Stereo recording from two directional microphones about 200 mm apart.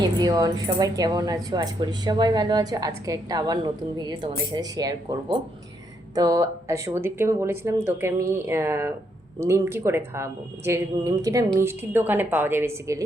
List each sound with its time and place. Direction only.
0.0 s speech: 20° right (ahead or behind)